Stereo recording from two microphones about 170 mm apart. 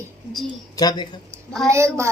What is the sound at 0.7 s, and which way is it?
Speech, 25° left (ahead or behind).